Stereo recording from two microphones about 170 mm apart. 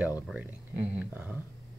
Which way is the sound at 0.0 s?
10° right (ahead or behind).